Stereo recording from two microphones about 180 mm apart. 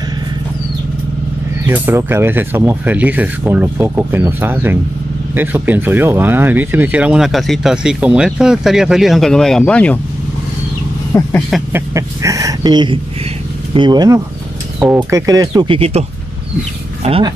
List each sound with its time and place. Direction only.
1.7 s speech: 10° right (ahead or behind); by 9.9 s 5° left (ahead or behind)
11.1 s speech: 15° left (ahead or behind)
11.7 s speech: 15° right (ahead or behind); by 17.3 s 30° right (ahead or behind)